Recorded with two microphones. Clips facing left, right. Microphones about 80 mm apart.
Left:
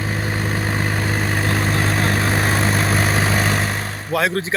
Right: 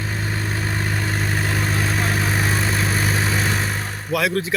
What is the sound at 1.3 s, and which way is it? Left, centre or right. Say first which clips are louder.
Vehicle: left 3 dB; left.